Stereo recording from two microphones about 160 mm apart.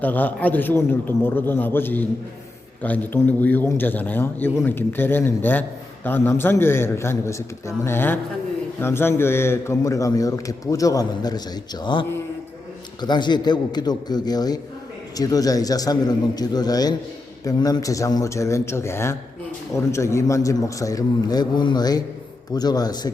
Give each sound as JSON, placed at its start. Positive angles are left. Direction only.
{"t": 0.0, "sound": "a man's voice", "side_deg": 10}